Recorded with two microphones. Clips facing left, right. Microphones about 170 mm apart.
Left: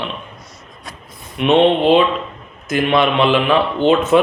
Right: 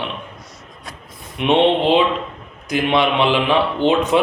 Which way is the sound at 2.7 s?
15° right (ahead or behind).